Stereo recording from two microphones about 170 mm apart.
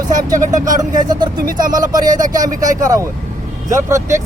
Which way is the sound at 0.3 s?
50° right (ahead or behind).